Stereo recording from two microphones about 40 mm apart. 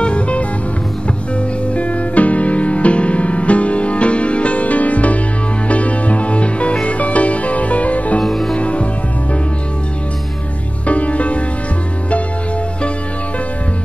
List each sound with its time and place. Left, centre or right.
0.0 s music: left
1.8 s music: left
8.2 s music: centre
8.5 s music: left
10.9 s music: left